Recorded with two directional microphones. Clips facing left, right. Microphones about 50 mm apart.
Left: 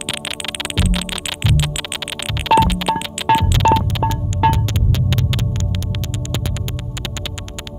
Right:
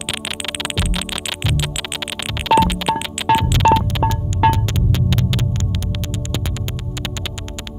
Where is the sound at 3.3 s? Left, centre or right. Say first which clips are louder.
Left 1 dB; centre.